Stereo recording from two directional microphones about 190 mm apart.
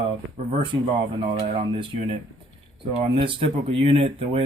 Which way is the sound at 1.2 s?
25° right (ahead or behind).